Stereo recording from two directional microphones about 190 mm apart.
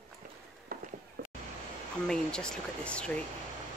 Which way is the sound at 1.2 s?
50° right (ahead or behind).